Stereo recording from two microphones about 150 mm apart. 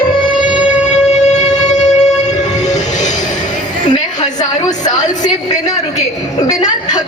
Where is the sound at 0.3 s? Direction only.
60° left (ahead or behind).